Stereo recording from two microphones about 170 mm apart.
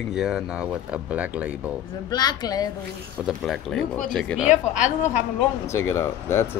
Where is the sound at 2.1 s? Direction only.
25° left (ahead or behind).